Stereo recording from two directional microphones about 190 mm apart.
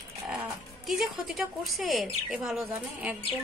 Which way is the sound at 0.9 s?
Centre (ahead or behind).